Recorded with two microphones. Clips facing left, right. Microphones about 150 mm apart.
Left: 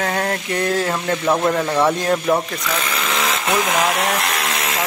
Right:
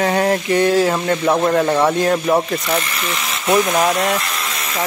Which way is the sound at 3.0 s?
90° left.